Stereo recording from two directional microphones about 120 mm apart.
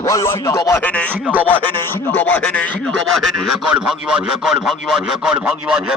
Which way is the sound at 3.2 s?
5° right (ahead or behind).